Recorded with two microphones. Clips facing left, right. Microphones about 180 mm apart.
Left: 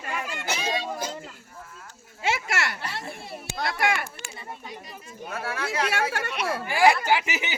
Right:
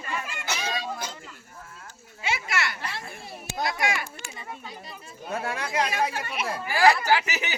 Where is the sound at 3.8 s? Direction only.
55° left (ahead or behind).